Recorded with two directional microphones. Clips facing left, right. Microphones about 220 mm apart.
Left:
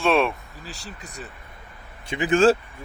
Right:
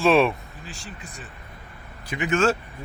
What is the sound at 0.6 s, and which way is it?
Speech, 35° left (ahead or behind).